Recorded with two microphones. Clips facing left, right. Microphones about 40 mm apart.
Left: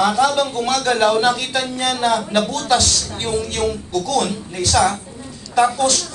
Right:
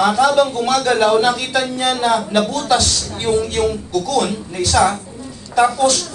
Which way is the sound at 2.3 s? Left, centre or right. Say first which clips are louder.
Right 1 dB; right.